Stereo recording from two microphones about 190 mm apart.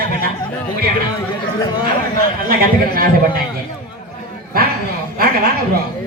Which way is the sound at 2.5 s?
50° right (ahead or behind).